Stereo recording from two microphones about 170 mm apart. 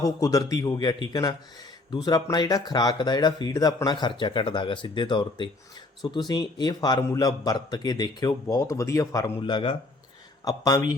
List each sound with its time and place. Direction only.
0.0 s speech: 20° left (ahead or behind)
9.4 s speech: 30° left (ahead or behind)